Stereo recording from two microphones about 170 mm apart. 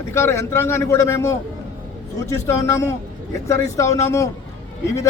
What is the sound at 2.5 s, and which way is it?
A man's voice, 15° left (ahead or behind).